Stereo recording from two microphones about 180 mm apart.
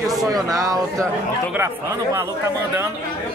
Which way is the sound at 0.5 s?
20° right (ahead or behind).